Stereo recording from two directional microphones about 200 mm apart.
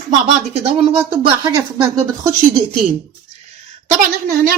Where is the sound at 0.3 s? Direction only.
30° right (ahead or behind).